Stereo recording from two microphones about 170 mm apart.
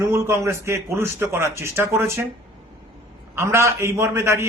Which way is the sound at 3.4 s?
15° right (ahead or behind).